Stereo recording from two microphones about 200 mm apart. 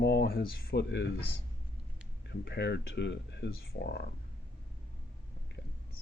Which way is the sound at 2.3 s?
55° left (ahead or behind).